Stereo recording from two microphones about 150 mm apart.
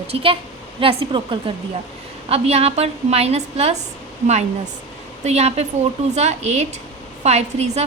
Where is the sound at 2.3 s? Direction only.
45° right (ahead or behind).